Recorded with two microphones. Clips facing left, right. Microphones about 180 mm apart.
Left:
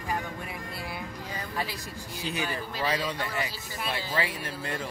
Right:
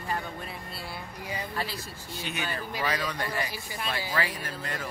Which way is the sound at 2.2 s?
35° left (ahead or behind).